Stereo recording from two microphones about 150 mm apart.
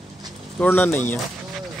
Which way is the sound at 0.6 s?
10° left (ahead or behind).